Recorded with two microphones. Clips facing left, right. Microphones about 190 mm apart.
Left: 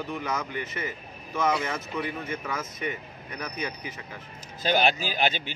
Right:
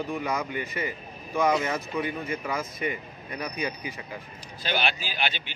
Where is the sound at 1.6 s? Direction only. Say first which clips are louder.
Right 2 dB; centre (ahead or behind).